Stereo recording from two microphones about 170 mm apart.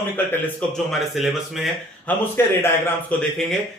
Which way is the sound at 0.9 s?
Centre (ahead or behind).